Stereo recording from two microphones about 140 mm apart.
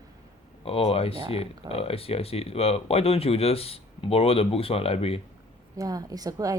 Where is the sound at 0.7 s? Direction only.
45° left (ahead or behind).